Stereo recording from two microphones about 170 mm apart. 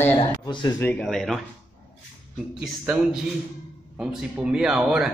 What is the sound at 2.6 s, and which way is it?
Speech, 5° right (ahead or behind).